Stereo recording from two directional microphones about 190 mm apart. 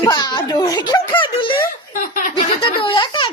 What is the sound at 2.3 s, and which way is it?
Speech, 25° left (ahead or behind).